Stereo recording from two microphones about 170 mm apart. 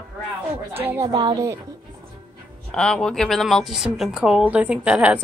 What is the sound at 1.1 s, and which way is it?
Speech, 25° right (ahead or behind).